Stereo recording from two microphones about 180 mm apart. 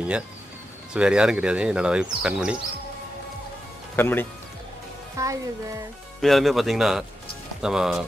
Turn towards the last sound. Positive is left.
turn(degrees=-5)  # may be behind; listen again after turning